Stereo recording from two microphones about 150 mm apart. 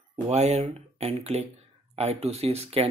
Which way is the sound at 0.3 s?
45° right (ahead or behind).